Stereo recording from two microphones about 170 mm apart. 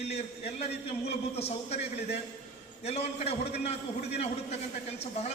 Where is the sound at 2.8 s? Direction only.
40° left (ahead or behind).